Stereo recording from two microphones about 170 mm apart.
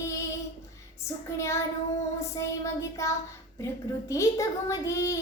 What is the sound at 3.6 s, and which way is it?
A child's voice, 20° left (ahead or behind).